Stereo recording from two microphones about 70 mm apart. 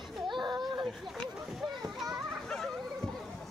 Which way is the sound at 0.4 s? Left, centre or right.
Right.